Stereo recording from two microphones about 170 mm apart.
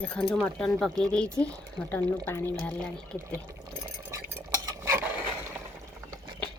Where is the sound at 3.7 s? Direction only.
15° right (ahead or behind).